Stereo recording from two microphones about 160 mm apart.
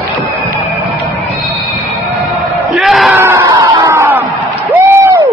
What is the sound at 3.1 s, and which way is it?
Crowd, 15° right (ahead or behind).